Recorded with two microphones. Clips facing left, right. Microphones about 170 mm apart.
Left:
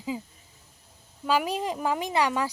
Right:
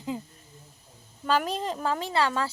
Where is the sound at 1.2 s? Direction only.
10° left (ahead or behind).